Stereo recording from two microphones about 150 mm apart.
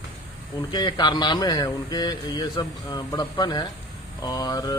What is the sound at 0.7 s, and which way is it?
A man's voice, 30° left (ahead or behind).